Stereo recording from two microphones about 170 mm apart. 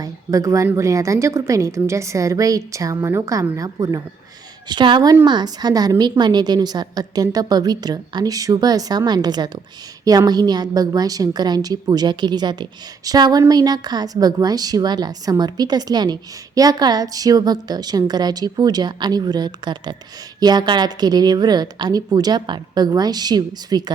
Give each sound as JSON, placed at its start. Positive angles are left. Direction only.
{"t": 0.0, "sound": "a woman's voice", "side_deg": -20}